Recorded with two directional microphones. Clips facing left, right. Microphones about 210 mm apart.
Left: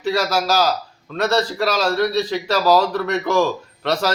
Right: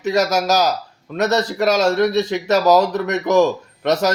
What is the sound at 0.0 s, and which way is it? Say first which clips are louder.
Speech: right 3 dB; 45° right (ahead or behind).